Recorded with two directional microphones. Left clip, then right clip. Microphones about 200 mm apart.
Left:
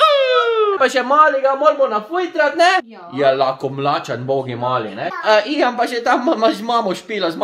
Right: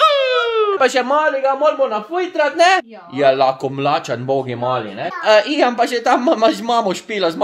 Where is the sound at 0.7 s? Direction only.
25° right (ahead or behind).